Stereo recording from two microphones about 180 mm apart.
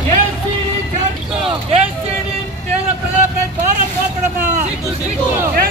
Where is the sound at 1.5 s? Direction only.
35° right (ahead or behind).